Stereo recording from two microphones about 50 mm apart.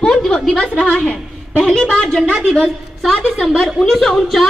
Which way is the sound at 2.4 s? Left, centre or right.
Centre.